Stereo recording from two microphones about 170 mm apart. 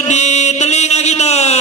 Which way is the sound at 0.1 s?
40° left (ahead or behind).